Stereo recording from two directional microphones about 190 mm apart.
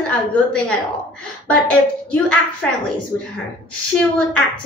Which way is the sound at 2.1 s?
5° left (ahead or behind).